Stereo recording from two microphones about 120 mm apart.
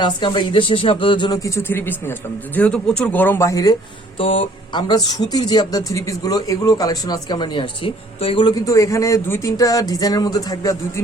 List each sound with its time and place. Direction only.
0.0 s speech: 40° left (ahead or behind)
1.4 s speech: 25° left (ahead or behind)
4.2 s speech: 50° left (ahead or behind)
8.4 s speech: 30° left (ahead or behind)